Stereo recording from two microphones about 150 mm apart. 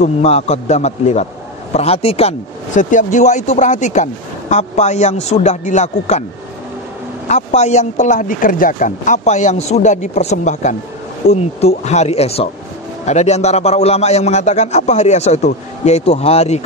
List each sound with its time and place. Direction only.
0.0 s speech: 45° left (ahead or behind)
7.2 s speech: 50° left (ahead or behind)